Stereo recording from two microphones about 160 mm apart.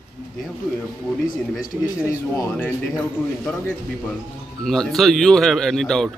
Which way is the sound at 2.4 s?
15° left (ahead or behind).